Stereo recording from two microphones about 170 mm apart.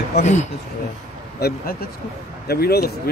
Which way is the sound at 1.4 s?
70° left (ahead or behind).